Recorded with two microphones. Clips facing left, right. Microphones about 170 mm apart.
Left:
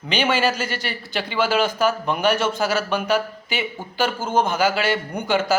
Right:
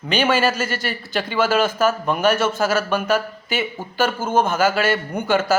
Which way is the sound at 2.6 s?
50° right (ahead or behind).